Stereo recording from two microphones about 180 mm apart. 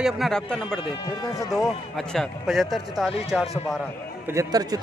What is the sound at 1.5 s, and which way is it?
A man's voice, centre (ahead or behind).